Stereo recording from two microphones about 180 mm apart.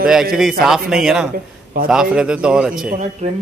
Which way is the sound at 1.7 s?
50° right (ahead or behind).